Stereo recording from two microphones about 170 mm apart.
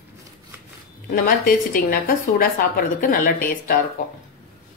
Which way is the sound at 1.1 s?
60° left (ahead or behind).